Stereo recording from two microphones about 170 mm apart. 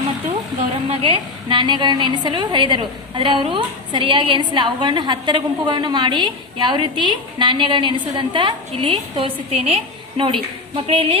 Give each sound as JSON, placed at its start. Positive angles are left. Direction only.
{"t": 0.9, "sound": "a woman's voice", "side_deg": -35}